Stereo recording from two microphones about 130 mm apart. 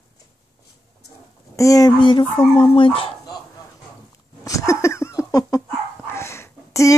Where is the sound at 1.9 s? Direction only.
40° left (ahead or behind).